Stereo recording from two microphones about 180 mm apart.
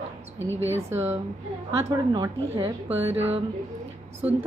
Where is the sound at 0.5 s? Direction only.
90° right.